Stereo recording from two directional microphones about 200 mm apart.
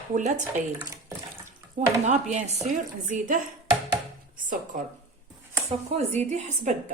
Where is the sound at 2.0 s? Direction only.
35° right (ahead or behind).